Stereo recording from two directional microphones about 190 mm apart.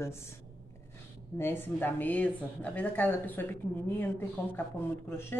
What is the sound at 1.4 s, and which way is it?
Speech, 10° left (ahead or behind).